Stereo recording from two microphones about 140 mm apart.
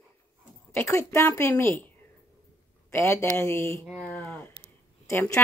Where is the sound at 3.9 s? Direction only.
10° left (ahead or behind).